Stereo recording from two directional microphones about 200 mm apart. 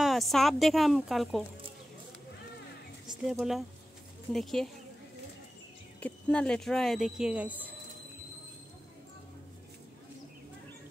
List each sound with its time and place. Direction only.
0.0 s speech: centre (ahead or behind)
3.1 s speech: centre (ahead or behind)
5.9 s speech: 5° left (ahead or behind)